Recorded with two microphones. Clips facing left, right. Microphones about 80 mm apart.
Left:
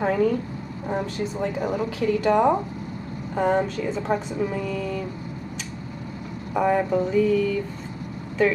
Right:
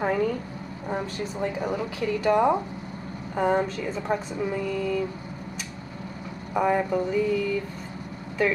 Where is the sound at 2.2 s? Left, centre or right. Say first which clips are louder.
Left 1 dB; centre.